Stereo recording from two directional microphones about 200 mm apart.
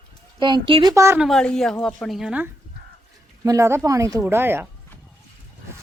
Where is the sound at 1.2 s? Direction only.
5° left (ahead or behind).